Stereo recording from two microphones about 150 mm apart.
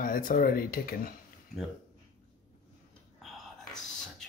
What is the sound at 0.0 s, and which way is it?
Speech, 70° left (ahead or behind).